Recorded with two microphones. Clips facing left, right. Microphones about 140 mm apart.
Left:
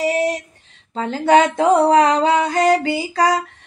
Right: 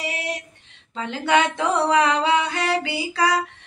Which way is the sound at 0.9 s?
40° left (ahead or behind).